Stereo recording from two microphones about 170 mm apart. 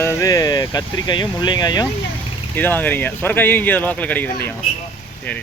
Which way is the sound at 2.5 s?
10° left (ahead or behind).